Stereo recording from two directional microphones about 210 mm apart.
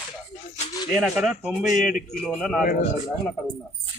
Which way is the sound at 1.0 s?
5° right (ahead or behind).